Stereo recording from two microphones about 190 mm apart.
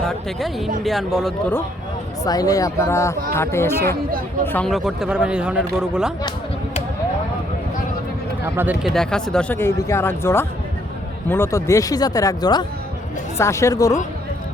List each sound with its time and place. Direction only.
0.0 s speech: centre (ahead or behind)
2.2 s speech: 20° left (ahead or behind); by 6.1 s 5° right (ahead or behind)
8.5 s speech: 10° right (ahead or behind)
8.9 s speech: 5° left (ahead or behind)